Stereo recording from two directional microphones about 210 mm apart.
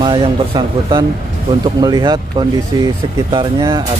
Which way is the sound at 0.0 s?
20° right (ahead or behind).